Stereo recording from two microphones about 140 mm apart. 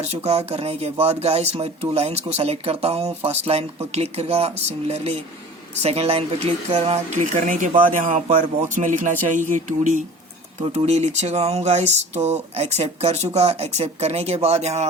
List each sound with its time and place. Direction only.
0.0 s speech: 50° right (ahead or behind)
7.4 s music: 65° right (ahead or behind)
10.6 s speech: 50° right (ahead or behind)